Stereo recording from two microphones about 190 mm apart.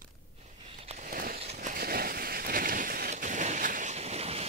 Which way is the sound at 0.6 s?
30° right (ahead or behind).